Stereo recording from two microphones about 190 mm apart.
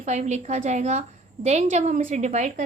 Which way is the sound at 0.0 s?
35° right (ahead or behind).